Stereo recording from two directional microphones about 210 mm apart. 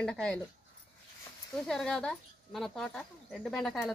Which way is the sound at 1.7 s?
Centre (ahead or behind).